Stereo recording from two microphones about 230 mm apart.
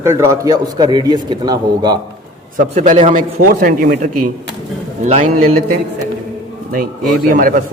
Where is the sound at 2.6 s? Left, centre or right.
Right.